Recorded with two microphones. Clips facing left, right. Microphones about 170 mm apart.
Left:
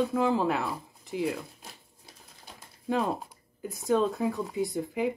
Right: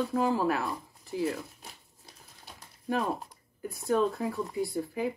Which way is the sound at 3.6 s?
20° left (ahead or behind).